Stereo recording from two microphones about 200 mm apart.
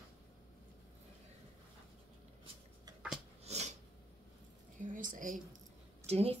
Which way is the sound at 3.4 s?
35° right (ahead or behind).